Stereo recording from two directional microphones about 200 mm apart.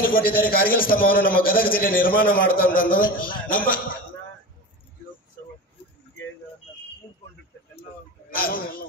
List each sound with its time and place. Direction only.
0.1 s a man's voice: 45° left (ahead or behind)
8.4 s a man's voice: 45° left (ahead or behind)